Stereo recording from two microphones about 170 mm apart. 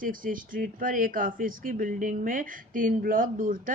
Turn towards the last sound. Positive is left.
turn(degrees=-50)  # may be behind; listen again after turning